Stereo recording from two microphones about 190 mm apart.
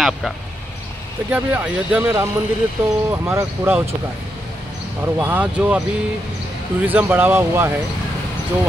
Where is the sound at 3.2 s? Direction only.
10° right (ahead or behind).